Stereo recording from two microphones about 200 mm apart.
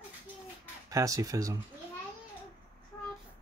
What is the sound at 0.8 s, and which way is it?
Speech, 15° right (ahead or behind).